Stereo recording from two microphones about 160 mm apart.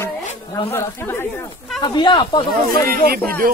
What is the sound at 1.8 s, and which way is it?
Speech, 25° left (ahead or behind).